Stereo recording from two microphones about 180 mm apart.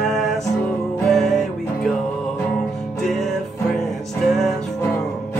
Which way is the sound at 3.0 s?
Centre (ahead or behind).